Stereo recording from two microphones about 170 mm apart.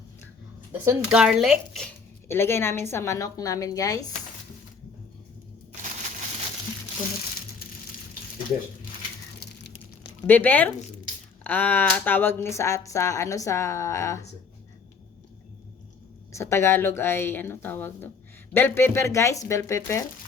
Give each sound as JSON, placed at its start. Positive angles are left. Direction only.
{"t": 0.7, "sound": "speech", "side_deg": -5}
{"t": 2.2, "sound": "speech", "side_deg": 15}
{"t": 10.2, "sound": "speech", "side_deg": 10}
{"t": 16.3, "sound": "speech", "side_deg": 15}